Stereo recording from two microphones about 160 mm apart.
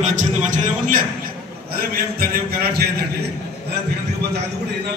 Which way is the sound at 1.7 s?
70° right (ahead or behind).